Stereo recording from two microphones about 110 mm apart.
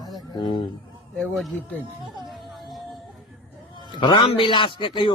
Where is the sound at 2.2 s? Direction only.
Centre (ahead or behind).